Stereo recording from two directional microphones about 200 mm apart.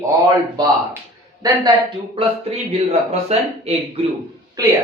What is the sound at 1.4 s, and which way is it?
A man's voice, 20° right (ahead or behind).